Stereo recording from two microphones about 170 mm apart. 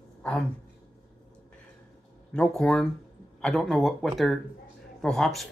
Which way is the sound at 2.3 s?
5° left (ahead or behind).